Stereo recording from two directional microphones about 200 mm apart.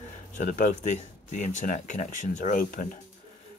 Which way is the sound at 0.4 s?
40° left (ahead or behind).